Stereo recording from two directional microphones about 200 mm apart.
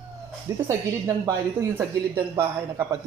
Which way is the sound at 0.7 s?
15° right (ahead or behind).